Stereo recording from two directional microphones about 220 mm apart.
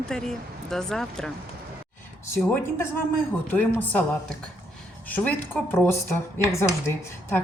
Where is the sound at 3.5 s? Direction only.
5° left (ahead or behind).